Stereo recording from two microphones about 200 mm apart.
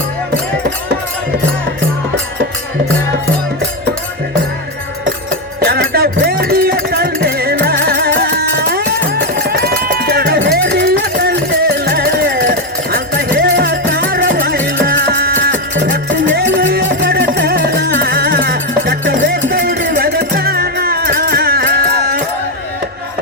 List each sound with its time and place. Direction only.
5.5 s music: 50° right (ahead or behind)
14.3 s music: 45° right (ahead or behind)
16.0 s music: 60° right (ahead or behind)